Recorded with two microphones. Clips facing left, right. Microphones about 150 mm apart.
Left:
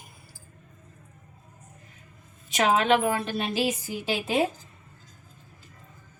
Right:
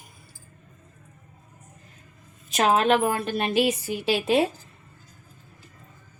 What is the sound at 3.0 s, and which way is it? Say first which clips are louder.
A woman's voice: right 2 dB; 45° right (ahead or behind).